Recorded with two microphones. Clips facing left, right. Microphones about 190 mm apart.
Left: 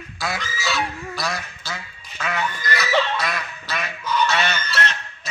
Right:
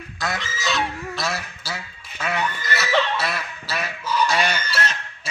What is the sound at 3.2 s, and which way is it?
Goose, 5° right (ahead or behind).